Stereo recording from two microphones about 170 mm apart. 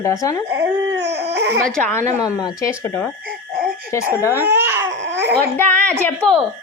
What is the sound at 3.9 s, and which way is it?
Speech, 15° left (ahead or behind).